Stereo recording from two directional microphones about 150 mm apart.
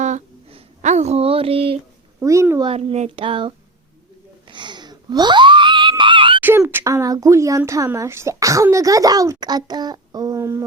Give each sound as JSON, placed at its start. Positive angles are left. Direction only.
{"t": 0.0, "sound": "a sound", "side_deg": -50}
{"t": 2.2, "sound": "speech", "side_deg": -20}
{"t": 2.6, "sound": "child singing", "side_deg": -45}
{"t": 4.4, "sound": "screaming", "side_deg": -30}
{"t": 6.4, "sound": "speech", "side_deg": -15}